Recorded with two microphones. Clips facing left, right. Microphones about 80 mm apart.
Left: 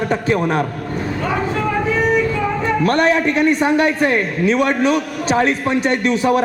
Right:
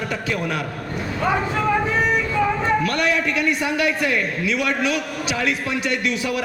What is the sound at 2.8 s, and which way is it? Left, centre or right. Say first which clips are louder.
A man's voice: left 6 dB; left.